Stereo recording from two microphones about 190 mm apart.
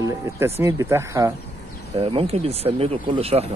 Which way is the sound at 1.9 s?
30° right (ahead or behind).